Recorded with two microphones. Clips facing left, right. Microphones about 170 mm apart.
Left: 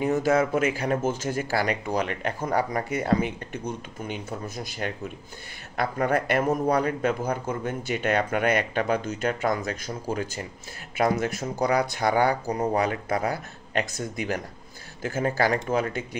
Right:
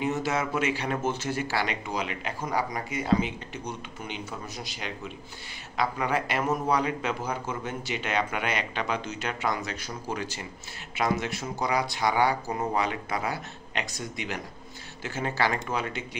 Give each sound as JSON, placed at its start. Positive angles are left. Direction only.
{"t": 0.1, "sound": "speech", "side_deg": 50}